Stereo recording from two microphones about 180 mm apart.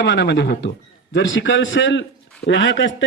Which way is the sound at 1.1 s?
90° left.